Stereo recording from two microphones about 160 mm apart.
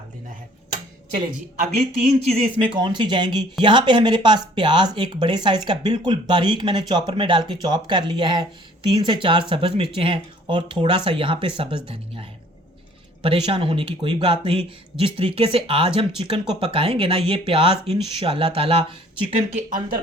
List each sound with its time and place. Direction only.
2.1 s speech: 40° right (ahead or behind)
13.2 s speech: 35° right (ahead or behind)
19.4 s speech: 50° right (ahead or behind)